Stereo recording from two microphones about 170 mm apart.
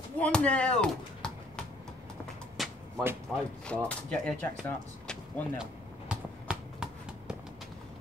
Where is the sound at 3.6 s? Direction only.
5° left (ahead or behind).